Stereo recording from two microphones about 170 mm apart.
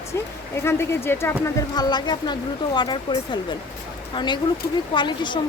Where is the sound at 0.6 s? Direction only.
15° left (ahead or behind).